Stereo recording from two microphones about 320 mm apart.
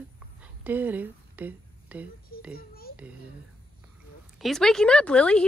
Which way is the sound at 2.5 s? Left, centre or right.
Left.